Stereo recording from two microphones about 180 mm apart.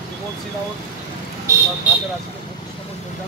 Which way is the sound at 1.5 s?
15° right (ahead or behind).